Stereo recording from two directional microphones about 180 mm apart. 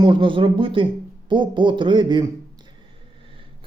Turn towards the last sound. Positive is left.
turn(degrees=-30)  # may be behind; listen again after turning